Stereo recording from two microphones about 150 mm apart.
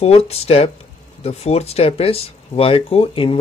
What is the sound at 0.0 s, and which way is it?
Speech, 45° left (ahead or behind).